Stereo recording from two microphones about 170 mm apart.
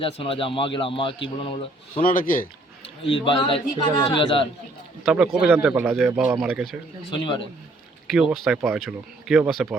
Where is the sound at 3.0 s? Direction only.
30° left (ahead or behind).